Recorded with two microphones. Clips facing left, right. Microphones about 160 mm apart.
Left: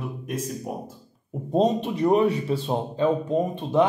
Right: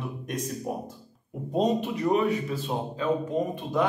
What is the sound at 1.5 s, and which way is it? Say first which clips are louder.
A man's voice: left 3 dB; 30° left (ahead or behind).